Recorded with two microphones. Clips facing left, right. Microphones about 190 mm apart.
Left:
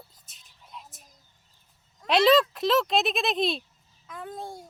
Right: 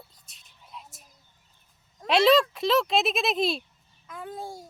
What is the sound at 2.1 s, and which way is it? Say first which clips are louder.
A woman's voice: even; centre (ahead or behind).